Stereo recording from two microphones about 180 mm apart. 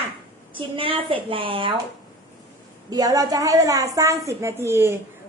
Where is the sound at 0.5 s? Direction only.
30° right (ahead or behind).